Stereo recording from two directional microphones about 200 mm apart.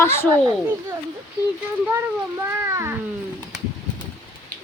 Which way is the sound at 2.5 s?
15° right (ahead or behind).